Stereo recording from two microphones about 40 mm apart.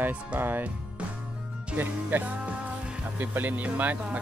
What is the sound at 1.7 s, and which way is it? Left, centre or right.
Music, right.